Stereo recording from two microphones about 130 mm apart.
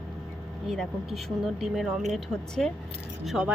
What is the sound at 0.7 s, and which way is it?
Speech, centre (ahead or behind).